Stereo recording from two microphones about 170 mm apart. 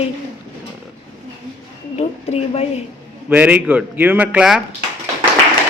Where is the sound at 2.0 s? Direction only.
35° left (ahead or behind).